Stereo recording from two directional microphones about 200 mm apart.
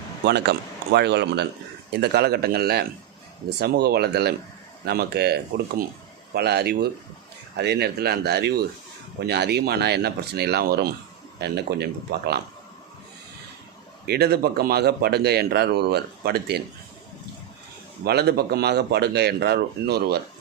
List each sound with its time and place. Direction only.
0.3 s speech: 55° right (ahead or behind)
14.0 s speech: 50° right (ahead or behind)
18.0 s speech: 55° right (ahead or behind)